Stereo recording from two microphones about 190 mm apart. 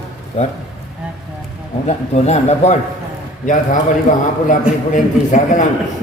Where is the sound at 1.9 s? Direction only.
35° left (ahead or behind).